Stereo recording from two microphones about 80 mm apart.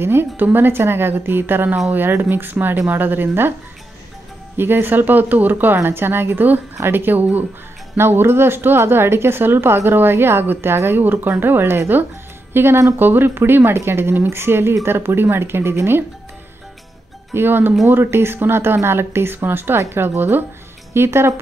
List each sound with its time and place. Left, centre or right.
0.0 s speech: right
4.6 s speech: right
17.3 s speech: right